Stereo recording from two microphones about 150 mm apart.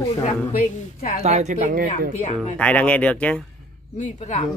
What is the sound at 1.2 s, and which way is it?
Speech, 50° right (ahead or behind).